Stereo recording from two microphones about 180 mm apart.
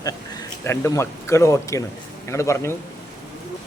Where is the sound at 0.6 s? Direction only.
15° left (ahead or behind).